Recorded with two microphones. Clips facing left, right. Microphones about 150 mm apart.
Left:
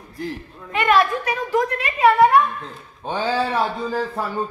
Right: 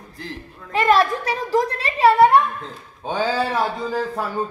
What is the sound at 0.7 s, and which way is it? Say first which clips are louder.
A woman's voice: right 1 dB; 35° right (ahead or behind).